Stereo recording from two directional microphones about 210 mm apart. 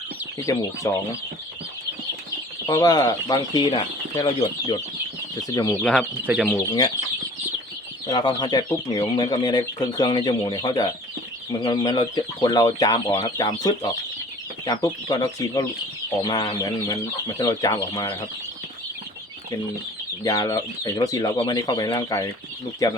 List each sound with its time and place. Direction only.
0.3 s speech: 15° left (ahead or behind)
2.6 s speech: 20° left (ahead or behind)
5.8 s speech: 5° left (ahead or behind)
6.6 s speech: 20° left (ahead or behind)
8.0 s speech: 20° left (ahead or behind)
20.2 s speech: 20° left (ahead or behind)